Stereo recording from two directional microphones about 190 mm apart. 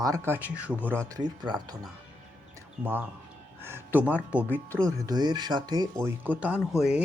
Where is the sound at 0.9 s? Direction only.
20° right (ahead or behind).